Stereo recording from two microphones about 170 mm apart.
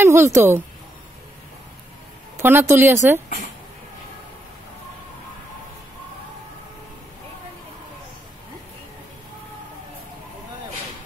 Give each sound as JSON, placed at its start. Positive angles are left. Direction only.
{"t": 0.0, "sound": "speech", "side_deg": -15}
{"t": 2.3, "sound": "speech", "side_deg": -15}